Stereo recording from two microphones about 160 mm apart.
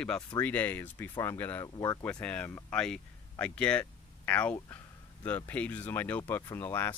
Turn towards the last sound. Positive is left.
turn(degrees=10)  # may be behind; listen again after turning